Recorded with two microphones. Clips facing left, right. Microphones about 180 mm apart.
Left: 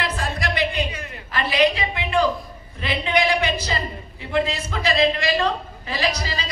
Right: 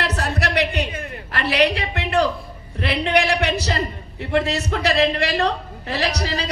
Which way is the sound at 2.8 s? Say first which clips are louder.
Right 2 dB; 75° right (ahead or behind).